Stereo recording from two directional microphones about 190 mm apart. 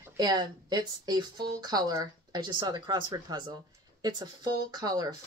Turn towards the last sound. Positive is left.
turn(degrees=-20)  # may be behind; listen again after turning